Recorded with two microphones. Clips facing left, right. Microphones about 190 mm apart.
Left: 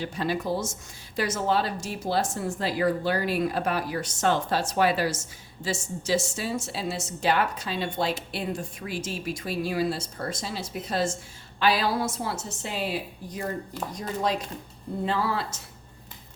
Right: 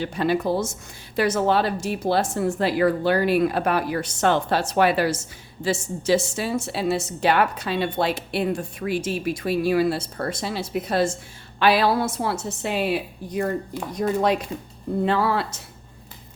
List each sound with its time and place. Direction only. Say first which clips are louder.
0.0 s a woman's voice: right 6 dB; 65° right (ahead or behind)